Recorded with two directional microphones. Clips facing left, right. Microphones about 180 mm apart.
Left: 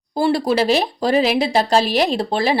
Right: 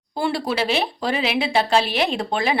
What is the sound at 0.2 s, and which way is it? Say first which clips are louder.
A woman's voice: left 6 dB; 40° left (ahead or behind).